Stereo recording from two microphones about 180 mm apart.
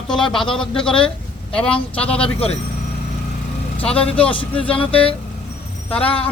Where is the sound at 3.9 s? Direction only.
5° left (ahead or behind).